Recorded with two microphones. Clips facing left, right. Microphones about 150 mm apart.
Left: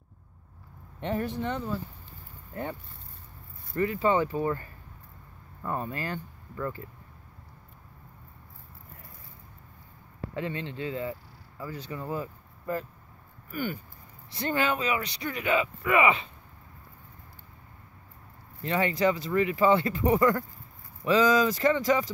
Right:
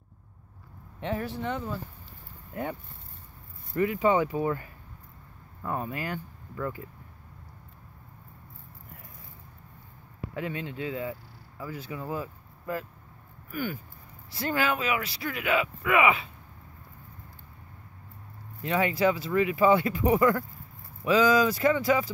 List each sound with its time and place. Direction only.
1.0 s speech: centre (ahead or behind)
10.3 s speech: 10° right (ahead or behind)
18.6 s speech: 5° right (ahead or behind)